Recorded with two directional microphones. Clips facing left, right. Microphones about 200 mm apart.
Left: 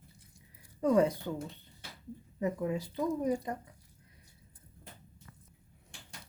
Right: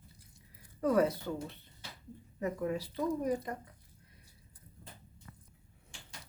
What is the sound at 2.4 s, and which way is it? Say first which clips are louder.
A woman's voice: left 2 dB; 15° left (ahead or behind).